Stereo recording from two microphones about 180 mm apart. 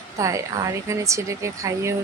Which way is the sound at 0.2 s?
15° right (ahead or behind).